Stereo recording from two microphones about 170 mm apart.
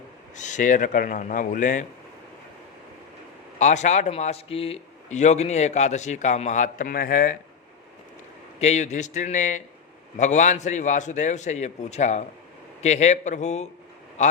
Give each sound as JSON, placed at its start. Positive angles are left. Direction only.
{"t": 0.3, "sound": "a man's voice", "side_deg": 45}
{"t": 3.6, "sound": "a man's voice", "side_deg": 45}
{"t": 8.6, "sound": "a man's voice", "side_deg": 45}